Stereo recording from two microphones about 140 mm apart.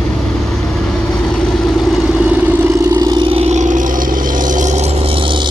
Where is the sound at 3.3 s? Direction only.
50° right (ahead or behind).